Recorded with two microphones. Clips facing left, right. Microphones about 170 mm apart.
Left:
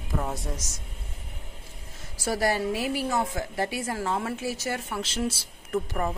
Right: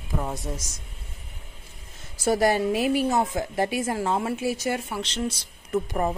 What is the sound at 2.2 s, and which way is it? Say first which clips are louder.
A woman's voice: right 4 dB; 20° right (ahead or behind).